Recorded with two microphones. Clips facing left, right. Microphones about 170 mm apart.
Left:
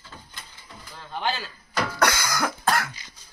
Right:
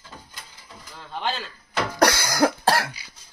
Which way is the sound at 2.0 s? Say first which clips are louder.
Right 6 dB; 35° right (ahead or behind).